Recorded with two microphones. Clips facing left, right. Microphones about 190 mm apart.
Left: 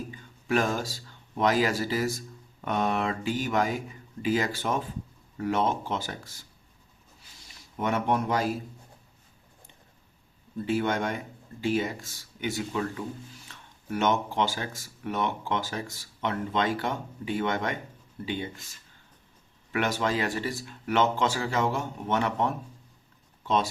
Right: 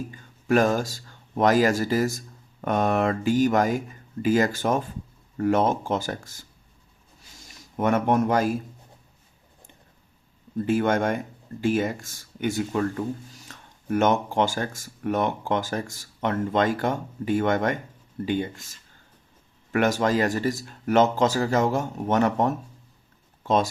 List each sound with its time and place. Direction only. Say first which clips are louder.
0.1 s speech: right 6 dB; 45° right (ahead or behind)
7.3 s speech: right 6 dB; 45° right (ahead or behind)
10.7 s speech: right 5 dB; 45° right (ahead or behind)
19.7 s speech: right 6 dB; 45° right (ahead or behind)
23.4 s a sound: right 4 dB; 45° right (ahead or behind)